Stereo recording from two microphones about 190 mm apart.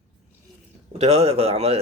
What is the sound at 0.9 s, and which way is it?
Speech, 35° right (ahead or behind).